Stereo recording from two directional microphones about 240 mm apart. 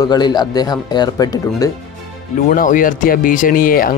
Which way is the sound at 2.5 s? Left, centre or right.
Left.